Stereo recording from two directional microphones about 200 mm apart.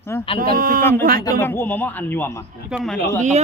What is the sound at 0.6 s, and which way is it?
Speech, 45° right (ahead or behind).